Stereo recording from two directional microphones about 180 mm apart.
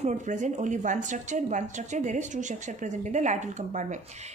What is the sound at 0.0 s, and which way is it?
A woman's voice, 45° right (ahead or behind).